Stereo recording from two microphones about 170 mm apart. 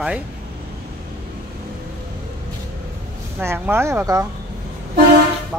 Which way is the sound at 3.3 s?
15° right (ahead or behind).